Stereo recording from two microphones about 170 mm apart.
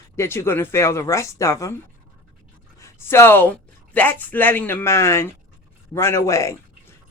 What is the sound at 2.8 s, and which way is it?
Speech, 15° left (ahead or behind).